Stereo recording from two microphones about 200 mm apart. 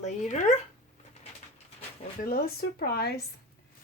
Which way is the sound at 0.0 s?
35° left (ahead or behind).